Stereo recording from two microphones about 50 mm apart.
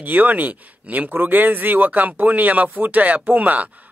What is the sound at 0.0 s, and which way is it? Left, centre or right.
Speech, right.